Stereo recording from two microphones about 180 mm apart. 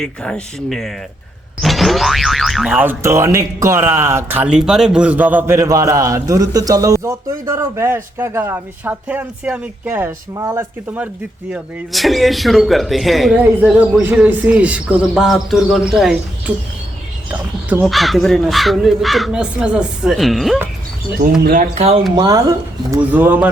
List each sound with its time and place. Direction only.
0.0 s a man's voice: 5° left (ahead or behind); by 11.1 s 10° right (ahead or behind)
11.5 s a man's voice: centre (ahead or behind)
17.7 s a man's voice: 5° right (ahead or behind)
21.8 s speech: 35° right (ahead or behind)
22.1 s speech: 20° right (ahead or behind)
22.9 s speech: 10° right (ahead or behind)